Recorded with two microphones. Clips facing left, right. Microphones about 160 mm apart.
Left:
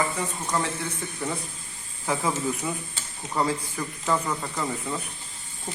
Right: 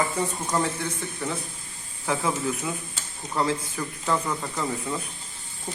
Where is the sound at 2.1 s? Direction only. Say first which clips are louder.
Even; 15° left (ahead or behind).